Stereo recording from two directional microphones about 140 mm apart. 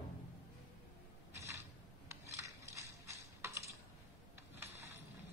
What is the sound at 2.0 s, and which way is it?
Crushing, 20° right (ahead or behind).